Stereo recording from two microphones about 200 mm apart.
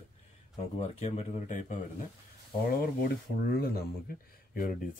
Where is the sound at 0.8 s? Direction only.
35° left (ahead or behind).